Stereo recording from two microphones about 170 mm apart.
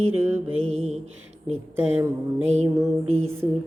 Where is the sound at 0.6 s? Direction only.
40° right (ahead or behind).